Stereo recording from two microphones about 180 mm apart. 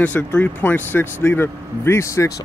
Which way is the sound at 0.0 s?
10° left (ahead or behind).